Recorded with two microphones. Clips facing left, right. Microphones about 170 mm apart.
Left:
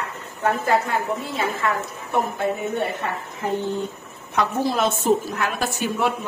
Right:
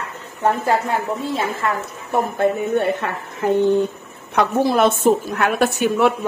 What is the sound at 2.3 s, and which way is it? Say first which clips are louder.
A woman's voice: right 6 dB; 65° right (ahead or behind).